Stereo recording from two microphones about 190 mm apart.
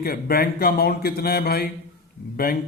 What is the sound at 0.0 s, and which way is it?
A man's voice, 55° left (ahead or behind).